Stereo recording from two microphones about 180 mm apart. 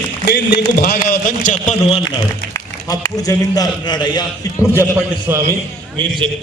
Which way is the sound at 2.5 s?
20° left (ahead or behind).